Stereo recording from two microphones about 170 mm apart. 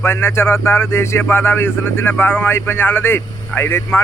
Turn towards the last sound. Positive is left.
turn(degrees=15)  # may be behind; listen again after turning